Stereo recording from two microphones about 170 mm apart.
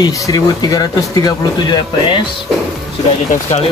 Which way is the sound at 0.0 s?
20° left (ahead or behind).